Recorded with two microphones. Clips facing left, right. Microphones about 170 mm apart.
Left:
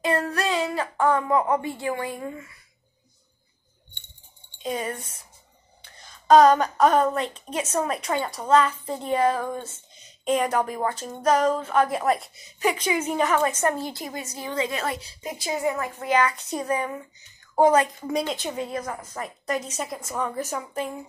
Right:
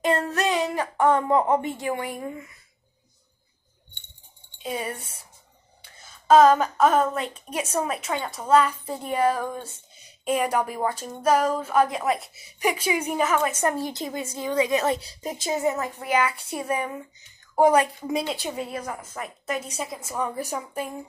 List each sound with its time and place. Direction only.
0.0 s speech: 20° right (ahead or behind)
4.6 s a woman's voice: 10° right (ahead or behind)